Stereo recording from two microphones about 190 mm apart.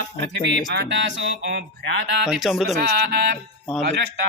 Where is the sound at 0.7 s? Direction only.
65° right (ahead or behind).